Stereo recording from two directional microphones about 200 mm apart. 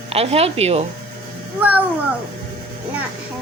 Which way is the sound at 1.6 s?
5° right (ahead or behind).